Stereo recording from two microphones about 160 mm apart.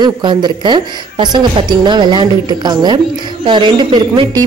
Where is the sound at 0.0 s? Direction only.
30° right (ahead or behind).